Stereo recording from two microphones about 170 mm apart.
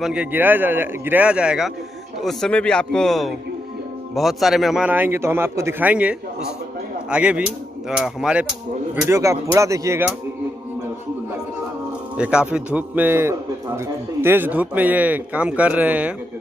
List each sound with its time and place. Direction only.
0.0 s a man's voice: 5° right (ahead or behind)
2.2 s a man's voice: 5° left (ahead or behind)
9.1 s a man's voice: 15° right (ahead or behind)
12.2 s a man's voice: 5° right (ahead or behind)